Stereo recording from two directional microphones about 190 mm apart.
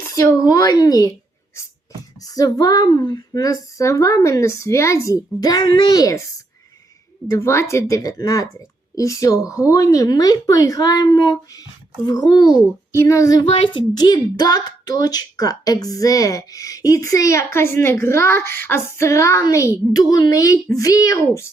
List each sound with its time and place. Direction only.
0.0 s speech: 15° left (ahead or behind)
2.2 s speech: 20° left (ahead or behind)
7.3 s speech: 15° left (ahead or behind)
13.4 s speech: 30° left (ahead or behind)